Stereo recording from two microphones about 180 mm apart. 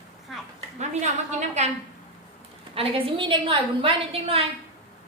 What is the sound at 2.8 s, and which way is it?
A woman's voice, 30° right (ahead or behind).